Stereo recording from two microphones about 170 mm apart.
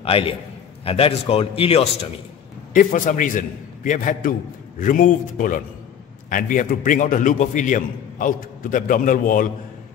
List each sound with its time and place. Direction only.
0.0 s a man's voice: 35° left (ahead or behind)
2.7 s a man's voice: 50° left (ahead or behind)